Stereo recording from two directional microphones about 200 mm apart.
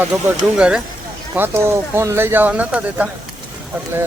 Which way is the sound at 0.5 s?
5° right (ahead or behind).